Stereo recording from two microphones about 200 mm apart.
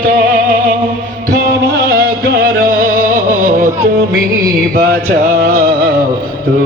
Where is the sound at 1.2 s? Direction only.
50° right (ahead or behind).